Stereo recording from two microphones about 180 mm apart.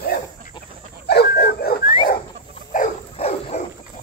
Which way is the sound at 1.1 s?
65° left (ahead or behind).